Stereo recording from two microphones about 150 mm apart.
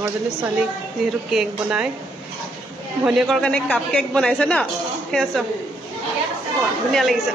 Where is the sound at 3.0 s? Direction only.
5° left (ahead or behind).